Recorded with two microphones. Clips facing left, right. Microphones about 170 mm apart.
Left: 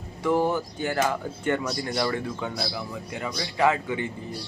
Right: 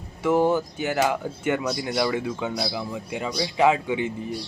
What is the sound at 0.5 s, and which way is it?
Speech, 10° right (ahead or behind).